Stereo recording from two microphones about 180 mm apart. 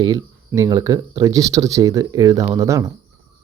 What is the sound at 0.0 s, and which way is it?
Speech, 20° right (ahead or behind).